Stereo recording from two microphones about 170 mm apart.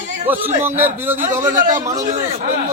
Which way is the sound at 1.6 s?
50° right (ahead or behind).